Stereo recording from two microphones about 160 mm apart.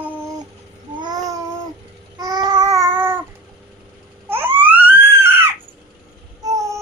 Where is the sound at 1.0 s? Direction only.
25° right (ahead or behind).